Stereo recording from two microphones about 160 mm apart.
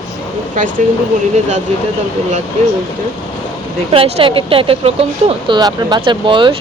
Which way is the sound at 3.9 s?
35° right (ahead or behind).